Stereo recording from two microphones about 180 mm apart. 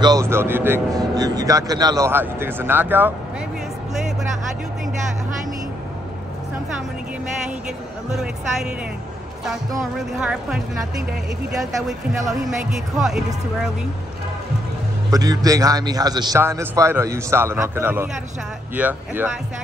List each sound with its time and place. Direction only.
0.0 s speech: 20° right (ahead or behind)
8.1 s speech: 5° right (ahead or behind)
9.9 s speech: 5° right (ahead or behind)
12.1 s speech: centre (ahead or behind)
15.0 s speech: 20° right (ahead or behind)